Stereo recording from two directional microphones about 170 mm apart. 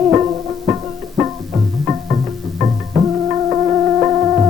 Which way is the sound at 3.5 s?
20° right (ahead or behind).